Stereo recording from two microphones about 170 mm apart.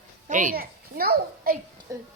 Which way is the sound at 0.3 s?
50° right (ahead or behind).